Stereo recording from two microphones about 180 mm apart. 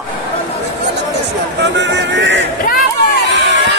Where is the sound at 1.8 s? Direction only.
75° right (ahead or behind).